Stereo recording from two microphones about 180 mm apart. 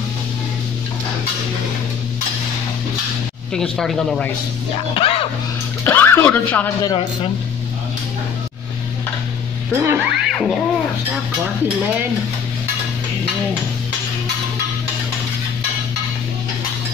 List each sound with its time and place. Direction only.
3.5 s speech: centre (ahead or behind)
4.9 s speech: 30° left (ahead or behind)
5.9 s speech: 10° left (ahead or behind)
9.7 s speech: 15° right (ahead or behind)
10.3 s speech: centre (ahead or behind)